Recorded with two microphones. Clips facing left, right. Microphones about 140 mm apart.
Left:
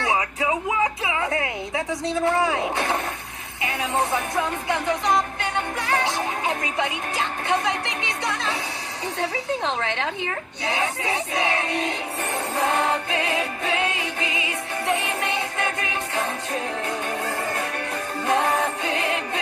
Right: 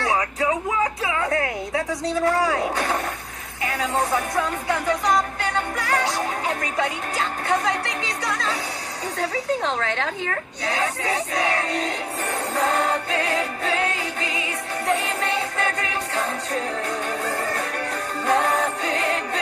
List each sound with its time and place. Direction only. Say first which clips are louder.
0.0 s music: right 1 dB; 25° left (ahead or behind)
2.0 s music: even; 25° left (ahead or behind)
4.6 s music: right 1 dB; 25° left (ahead or behind)
18.2 s music: right 1 dB; 20° left (ahead or behind)